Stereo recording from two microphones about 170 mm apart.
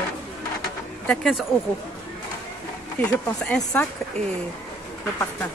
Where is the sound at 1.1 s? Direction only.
Centre (ahead or behind).